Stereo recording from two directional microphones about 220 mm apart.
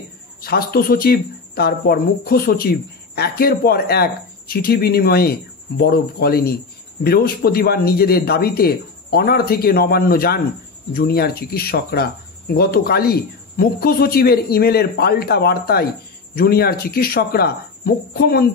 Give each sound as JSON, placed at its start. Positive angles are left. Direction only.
{"t": 0.4, "sound": "speech", "side_deg": 45}